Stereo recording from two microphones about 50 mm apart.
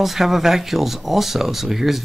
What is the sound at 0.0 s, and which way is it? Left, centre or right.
Speech, centre.